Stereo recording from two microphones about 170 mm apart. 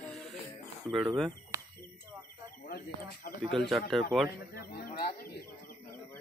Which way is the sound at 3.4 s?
Centre (ahead or behind).